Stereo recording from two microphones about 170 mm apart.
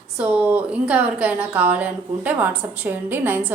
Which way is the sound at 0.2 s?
10° right (ahead or behind).